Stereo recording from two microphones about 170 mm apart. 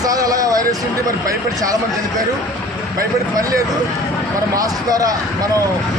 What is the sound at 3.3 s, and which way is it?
Speech, 20° right (ahead or behind).